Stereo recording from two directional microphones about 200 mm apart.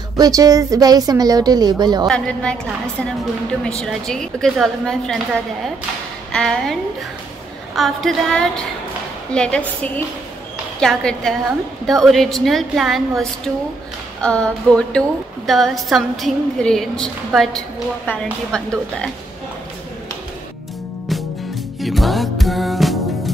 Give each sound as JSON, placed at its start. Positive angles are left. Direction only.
{"t": 0.2, "sound": "a woman's voice", "side_deg": -20}
{"t": 2.0, "sound": "a woman's voice", "side_deg": 5}
{"t": 3.8, "sound": "a woman's voice", "side_deg": 0}
{"t": 6.3, "sound": "a woman's voice", "side_deg": 5}
{"t": 10.8, "sound": "a woman's voice", "side_deg": 5}
{"t": 21.7, "sound": "music", "side_deg": 0}